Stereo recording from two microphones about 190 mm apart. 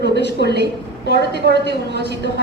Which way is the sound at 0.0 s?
65° right (ahead or behind).